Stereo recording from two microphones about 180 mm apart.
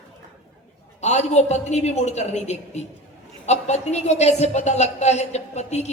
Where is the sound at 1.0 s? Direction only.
40° left (ahead or behind).